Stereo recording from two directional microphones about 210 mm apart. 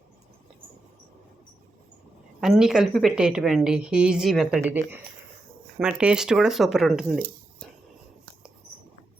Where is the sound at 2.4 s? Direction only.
5° right (ahead or behind).